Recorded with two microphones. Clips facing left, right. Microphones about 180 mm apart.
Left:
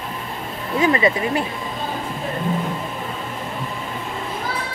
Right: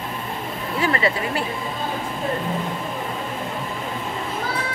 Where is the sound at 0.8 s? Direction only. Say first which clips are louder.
Left 4 dB; 20° left (ahead or behind).